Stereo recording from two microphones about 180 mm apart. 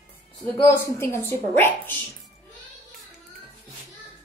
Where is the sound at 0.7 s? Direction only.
15° left (ahead or behind).